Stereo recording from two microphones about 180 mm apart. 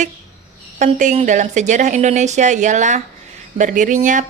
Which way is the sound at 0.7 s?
45° right (ahead or behind).